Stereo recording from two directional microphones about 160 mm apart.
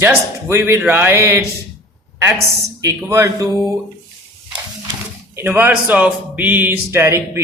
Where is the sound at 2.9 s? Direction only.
15° right (ahead or behind).